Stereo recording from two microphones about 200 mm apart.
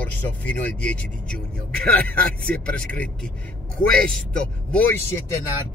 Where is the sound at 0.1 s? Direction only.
10° left (ahead or behind).